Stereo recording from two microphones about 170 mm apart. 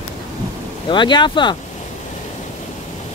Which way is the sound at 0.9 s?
25° left (ahead or behind).